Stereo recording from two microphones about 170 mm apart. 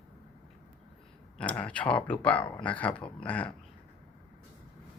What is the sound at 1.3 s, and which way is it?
Speech, 5° left (ahead or behind).